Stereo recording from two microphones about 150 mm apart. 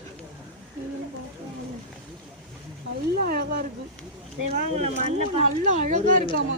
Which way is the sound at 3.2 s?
90° right.